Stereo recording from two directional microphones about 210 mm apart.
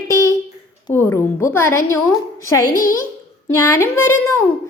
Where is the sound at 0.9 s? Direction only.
15° left (ahead or behind).